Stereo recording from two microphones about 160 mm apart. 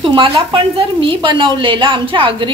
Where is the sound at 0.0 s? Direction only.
35° right (ahead or behind).